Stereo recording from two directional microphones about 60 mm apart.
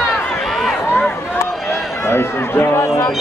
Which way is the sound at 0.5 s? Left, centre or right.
Centre.